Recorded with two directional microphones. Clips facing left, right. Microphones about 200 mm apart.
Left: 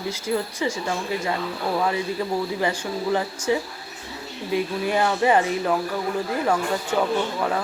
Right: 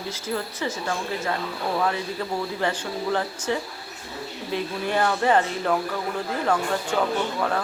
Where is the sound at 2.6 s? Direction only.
10° left (ahead or behind).